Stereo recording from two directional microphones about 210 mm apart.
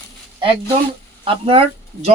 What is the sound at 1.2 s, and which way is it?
Speech, 25° right (ahead or behind).